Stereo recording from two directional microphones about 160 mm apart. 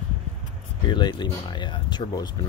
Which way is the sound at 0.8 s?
30° left (ahead or behind).